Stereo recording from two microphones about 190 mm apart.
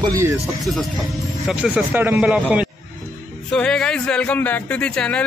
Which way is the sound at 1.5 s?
5° right (ahead or behind).